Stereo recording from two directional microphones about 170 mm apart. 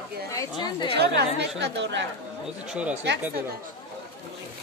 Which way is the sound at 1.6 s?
90° right.